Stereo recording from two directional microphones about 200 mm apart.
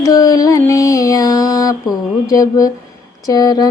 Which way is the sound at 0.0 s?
20° left (ahead or behind).